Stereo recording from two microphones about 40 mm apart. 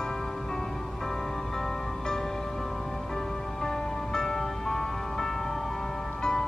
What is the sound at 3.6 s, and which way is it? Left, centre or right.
Music, centre.